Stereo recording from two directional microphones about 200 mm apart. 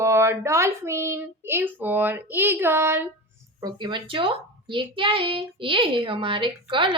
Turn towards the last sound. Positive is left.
turn(degrees=-25)  # may be behind; listen again after turning